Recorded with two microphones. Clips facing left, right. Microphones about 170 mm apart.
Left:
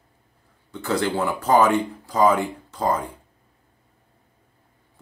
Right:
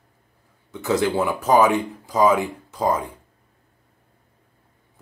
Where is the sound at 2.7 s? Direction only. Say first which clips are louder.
Right 2 dB; 15° right (ahead or behind).